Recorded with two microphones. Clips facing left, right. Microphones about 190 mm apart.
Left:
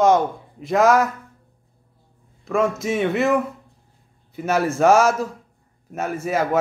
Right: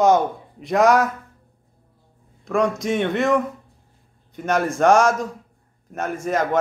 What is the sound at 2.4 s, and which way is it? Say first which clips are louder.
A man's voice: even; centre (ahead or behind).